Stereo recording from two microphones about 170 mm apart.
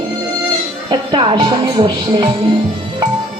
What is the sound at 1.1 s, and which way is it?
Speech, 30° right (ahead or behind).